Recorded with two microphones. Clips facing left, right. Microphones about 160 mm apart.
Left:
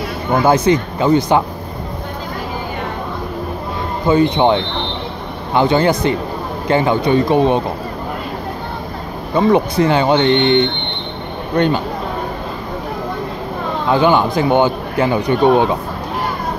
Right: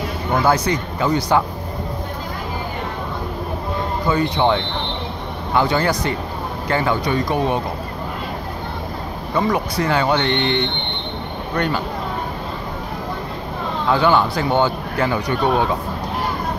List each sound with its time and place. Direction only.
0.3 s speech: 25° left (ahead or behind)
4.1 s speech: 20° left (ahead or behind)
9.3 s speech: 25° left (ahead or behind)
13.8 s speech: 20° left (ahead or behind)